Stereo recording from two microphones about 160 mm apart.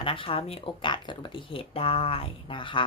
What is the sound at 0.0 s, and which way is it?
A woman's voice, 35° left (ahead or behind).